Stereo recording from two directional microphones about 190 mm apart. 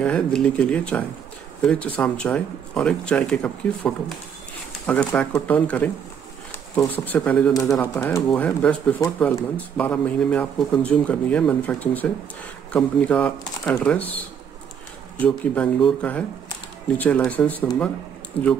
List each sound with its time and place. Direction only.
0.0 s speech: 5° left (ahead or behind)
8.3 s speech: 5° left (ahead or behind)
15.2 s speech: 5° left (ahead or behind)
18.4 s speech: 30° left (ahead or behind)